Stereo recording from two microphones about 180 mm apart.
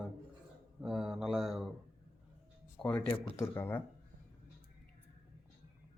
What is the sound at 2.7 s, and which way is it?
Speech, 10° left (ahead or behind).